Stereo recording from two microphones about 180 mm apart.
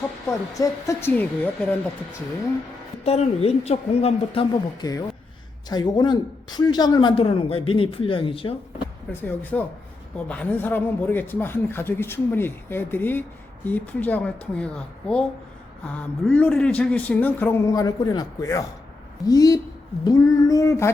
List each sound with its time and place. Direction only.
0.5 s speech: 20° left (ahead or behind)
3.0 s a woman's voice: 35° left (ahead or behind)
4.8 s speech: 20° left (ahead or behind)
9.2 s speech: 10° left (ahead or behind)